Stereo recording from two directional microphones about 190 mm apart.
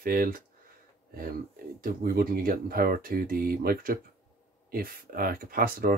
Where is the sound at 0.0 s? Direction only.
50° right (ahead or behind).